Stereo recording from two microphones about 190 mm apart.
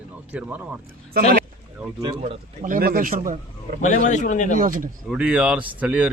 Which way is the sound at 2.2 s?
45° right (ahead or behind).